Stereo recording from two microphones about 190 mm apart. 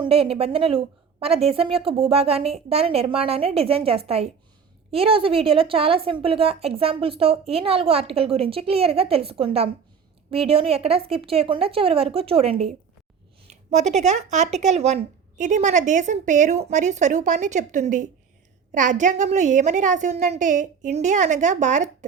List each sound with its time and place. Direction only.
0.0 s a woman's voice: 30° right (ahead or behind)